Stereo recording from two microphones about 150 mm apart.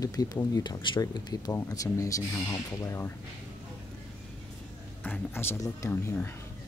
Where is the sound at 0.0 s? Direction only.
25° left (ahead or behind).